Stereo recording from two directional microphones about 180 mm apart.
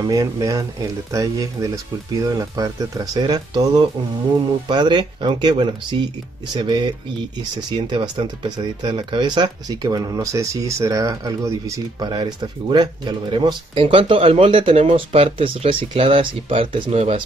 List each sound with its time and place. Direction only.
0.0 s speech: 20° right (ahead or behind)
4.6 s speech: 25° right (ahead or behind)